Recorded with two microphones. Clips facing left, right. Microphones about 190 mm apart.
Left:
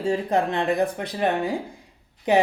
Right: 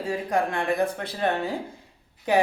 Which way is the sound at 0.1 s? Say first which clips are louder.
Left 3 dB; 25° left (ahead or behind).